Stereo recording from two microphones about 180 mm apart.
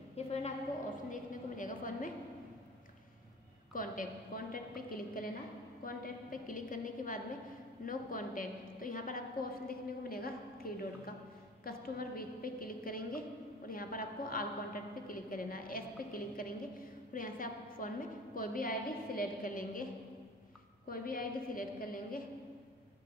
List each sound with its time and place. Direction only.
0.1 s a sound: 35° left (ahead or behind)
1.1 s a woman's voice: 50° left (ahead or behind)
3.7 s a woman's voice: 50° left (ahead or behind)
20.9 s a woman's voice: 55° left (ahead or behind)